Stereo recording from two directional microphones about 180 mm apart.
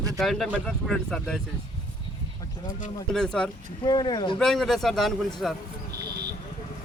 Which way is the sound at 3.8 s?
25° left (ahead or behind).